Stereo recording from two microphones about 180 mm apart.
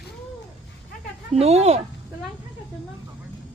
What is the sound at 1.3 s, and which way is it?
Speech, 35° right (ahead or behind).